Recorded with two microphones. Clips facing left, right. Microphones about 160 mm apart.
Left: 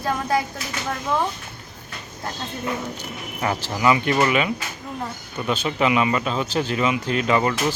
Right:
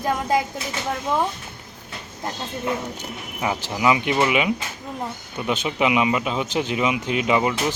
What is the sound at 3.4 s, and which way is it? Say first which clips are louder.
Speech: even; 10° right (ahead or behind).